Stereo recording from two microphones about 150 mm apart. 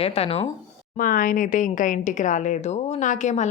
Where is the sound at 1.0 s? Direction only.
70° left (ahead or behind).